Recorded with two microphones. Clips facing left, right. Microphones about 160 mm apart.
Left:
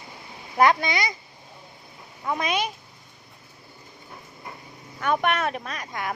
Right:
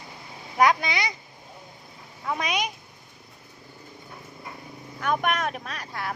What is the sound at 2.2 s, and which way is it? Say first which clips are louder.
Speech: left 2 dB; centre (ahead or behind).